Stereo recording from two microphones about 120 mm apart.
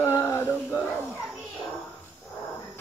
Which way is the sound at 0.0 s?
20° left (ahead or behind).